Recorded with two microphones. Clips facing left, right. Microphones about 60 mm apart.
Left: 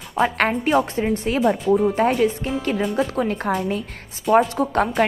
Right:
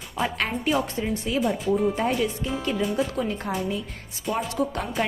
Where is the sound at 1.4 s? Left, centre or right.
Left.